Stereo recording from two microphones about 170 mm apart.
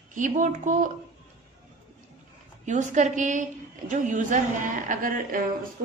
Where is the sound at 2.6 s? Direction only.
45° right (ahead or behind).